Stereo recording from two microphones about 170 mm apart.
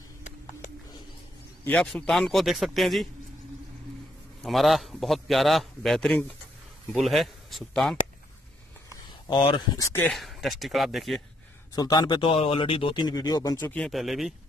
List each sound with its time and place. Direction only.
1.6 s a man's voice: 5° left (ahead or behind)
4.4 s a man's voice: centre (ahead or behind)
8.9 s speech: 25° left (ahead or behind)
10.0 s a man's voice: centre (ahead or behind)
11.7 s speech: 25° left (ahead or behind)
13.6 s a man's voice: 5° left (ahead or behind)